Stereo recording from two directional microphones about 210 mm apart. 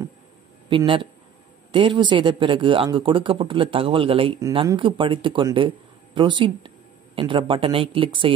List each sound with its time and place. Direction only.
0.7 s speech: 25° right (ahead or behind)